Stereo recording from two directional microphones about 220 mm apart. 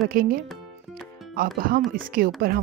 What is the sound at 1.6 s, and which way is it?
Speech, 40° right (ahead or behind).